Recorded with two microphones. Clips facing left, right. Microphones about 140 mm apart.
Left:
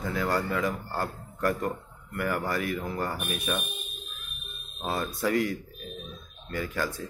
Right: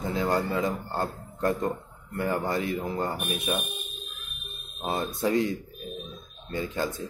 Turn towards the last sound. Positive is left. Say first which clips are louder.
# right 1 dB
turn(degrees=-25)  # may be behind; listen again after turning